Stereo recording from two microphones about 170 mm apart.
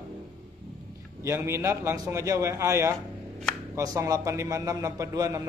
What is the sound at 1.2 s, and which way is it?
A man's voice, 15° right (ahead or behind).